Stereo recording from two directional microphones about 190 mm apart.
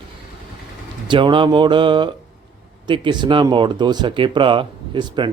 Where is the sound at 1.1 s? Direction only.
25° right (ahead or behind).